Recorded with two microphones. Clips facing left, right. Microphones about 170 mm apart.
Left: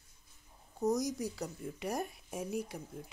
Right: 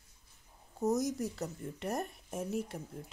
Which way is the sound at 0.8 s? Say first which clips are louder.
Right 1 dB; 5° right (ahead or behind).